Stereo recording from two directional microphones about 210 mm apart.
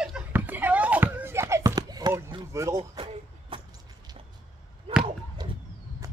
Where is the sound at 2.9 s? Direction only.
25° right (ahead or behind).